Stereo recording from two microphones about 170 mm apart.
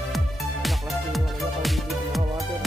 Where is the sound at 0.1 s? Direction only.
Centre (ahead or behind).